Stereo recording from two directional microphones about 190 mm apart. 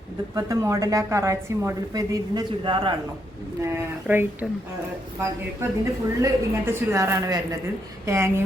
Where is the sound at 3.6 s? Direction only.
15° right (ahead or behind).